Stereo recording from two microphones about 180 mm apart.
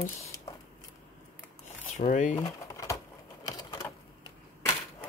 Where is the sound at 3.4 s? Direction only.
20° left (ahead or behind).